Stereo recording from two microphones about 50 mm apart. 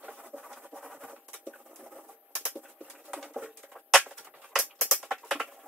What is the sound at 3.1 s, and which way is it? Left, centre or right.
Pigeon, centre.